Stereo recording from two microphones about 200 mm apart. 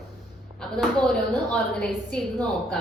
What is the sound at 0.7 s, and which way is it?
A woman's voice, 5° left (ahead or behind).